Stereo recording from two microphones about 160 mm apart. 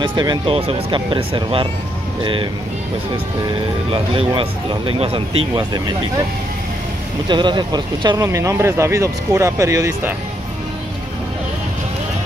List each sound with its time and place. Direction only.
0.0 s speech: 30° right (ahead or behind)
3.9 s speech: 35° right (ahead or behind)
7.2 s speech: 30° right (ahead or behind)